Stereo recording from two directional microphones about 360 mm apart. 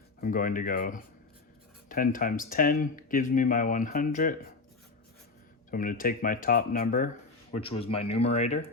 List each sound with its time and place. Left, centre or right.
0.2 s speech: left
5.7 s speech: left